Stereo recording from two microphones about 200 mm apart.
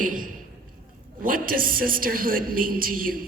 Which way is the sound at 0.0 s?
40° right (ahead or behind).